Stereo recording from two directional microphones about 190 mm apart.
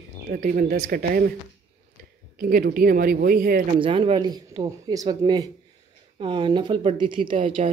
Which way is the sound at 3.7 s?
30° right (ahead or behind).